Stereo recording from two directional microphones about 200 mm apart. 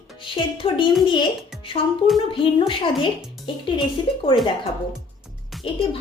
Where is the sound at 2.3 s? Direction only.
25° left (ahead or behind).